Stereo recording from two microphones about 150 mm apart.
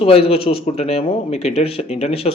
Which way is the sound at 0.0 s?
40° left (ahead or behind).